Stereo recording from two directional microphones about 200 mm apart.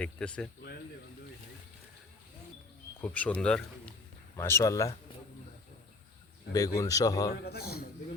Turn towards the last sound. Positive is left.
turn(degrees=50)  # may be behind; listen again after turning